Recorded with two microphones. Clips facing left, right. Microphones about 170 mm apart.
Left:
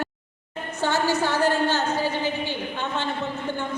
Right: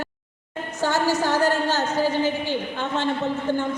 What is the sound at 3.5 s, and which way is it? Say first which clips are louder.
Speech: right 7 dB; 45° right (ahead or behind).